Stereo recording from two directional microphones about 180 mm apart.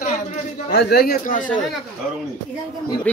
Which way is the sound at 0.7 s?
65° left (ahead or behind).